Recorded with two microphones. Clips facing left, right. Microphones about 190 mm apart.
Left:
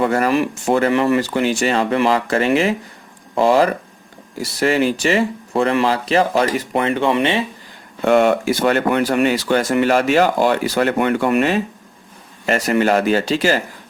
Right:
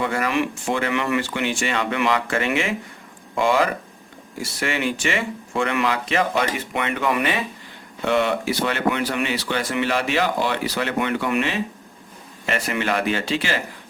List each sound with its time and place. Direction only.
0.0 s speech: 40° left (ahead or behind); by 7.4 s 25° left (ahead or behind)
8.0 s speech: 45° left (ahead or behind)